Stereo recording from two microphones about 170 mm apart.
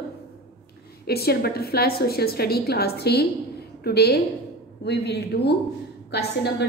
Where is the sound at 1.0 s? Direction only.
65° left (ahead or behind).